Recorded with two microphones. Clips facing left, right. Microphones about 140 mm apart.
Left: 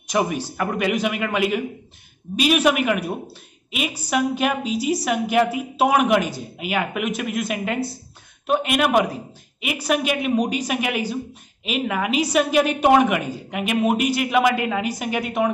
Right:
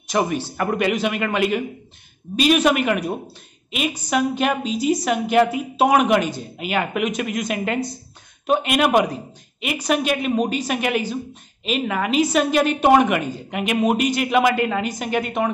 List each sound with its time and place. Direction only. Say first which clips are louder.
0.1 s a woman's voice: right 1 dB; 10° left (ahead or behind)